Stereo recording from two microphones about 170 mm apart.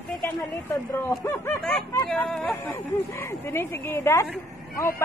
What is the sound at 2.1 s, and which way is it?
Speech, 5° left (ahead or behind).